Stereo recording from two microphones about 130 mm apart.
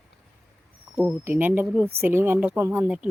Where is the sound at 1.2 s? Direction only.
15° right (ahead or behind).